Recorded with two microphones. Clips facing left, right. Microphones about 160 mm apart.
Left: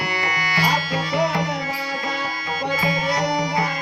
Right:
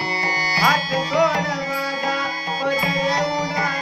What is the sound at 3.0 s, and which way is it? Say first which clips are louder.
Music: right 1 dB; 35° right (ahead or behind).